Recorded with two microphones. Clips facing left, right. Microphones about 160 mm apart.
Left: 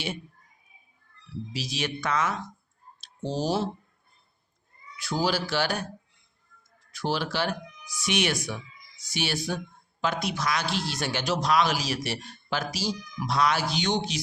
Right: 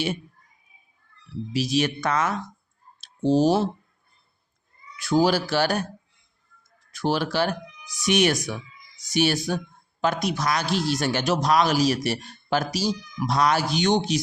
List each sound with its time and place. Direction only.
1.5 s speech: 50° right (ahead or behind)
3.3 s speech: 55° right (ahead or behind)
4.9 s speech: 50° right (ahead or behind)
6.9 s speech: 50° right (ahead or behind)